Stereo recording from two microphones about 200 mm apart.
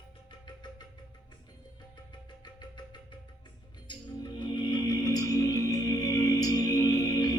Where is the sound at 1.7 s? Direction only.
20° left (ahead or behind).